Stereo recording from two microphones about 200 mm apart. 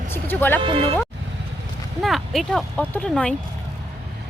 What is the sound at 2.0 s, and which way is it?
Speech, centre (ahead or behind).